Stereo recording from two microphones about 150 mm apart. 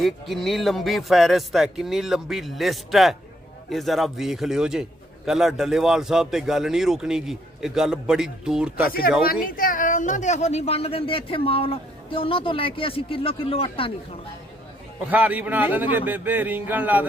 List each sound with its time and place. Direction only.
0.0 s a man's voice: centre (ahead or behind)
9.2 s speech: 75° left (ahead or behind); by 13.9 s 40° left (ahead or behind)
15.1 s a man's voice: 10° right (ahead or behind)